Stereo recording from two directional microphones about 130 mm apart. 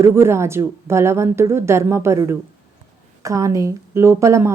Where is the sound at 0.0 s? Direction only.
20° right (ahead or behind).